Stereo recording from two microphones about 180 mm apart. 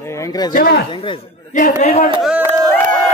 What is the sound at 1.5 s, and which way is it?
Speech, 45° left (ahead or behind).